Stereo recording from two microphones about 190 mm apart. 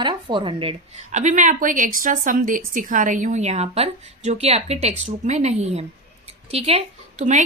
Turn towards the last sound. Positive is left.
turn(degrees=-40)  # may be behind; listen again after turning